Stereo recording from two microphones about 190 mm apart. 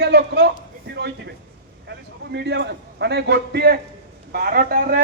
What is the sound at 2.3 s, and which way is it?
A man's voice, 65° right (ahead or behind).